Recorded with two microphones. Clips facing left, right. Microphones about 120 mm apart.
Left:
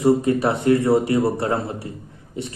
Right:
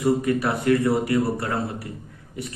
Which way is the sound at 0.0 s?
25° left (ahead or behind).